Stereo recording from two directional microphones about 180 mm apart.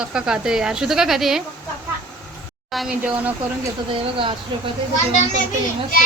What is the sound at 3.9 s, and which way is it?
Speech, 30° right (ahead or behind).